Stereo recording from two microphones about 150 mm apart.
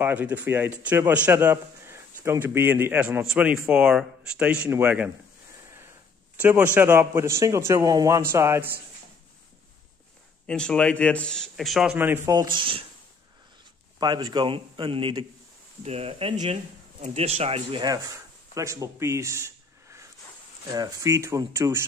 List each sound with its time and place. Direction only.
0.0 s a man's voice: 10° right (ahead or behind)
6.3 s a man's voice: 10° right (ahead or behind)
10.4 s a man's voice: 5° left (ahead or behind)
12.0 s speech: 15° right (ahead or behind); by 12.8 s 35° right (ahead or behind)
13.9 s a man's voice: 30° right (ahead or behind)
17.8 s speech: 20° right (ahead or behind)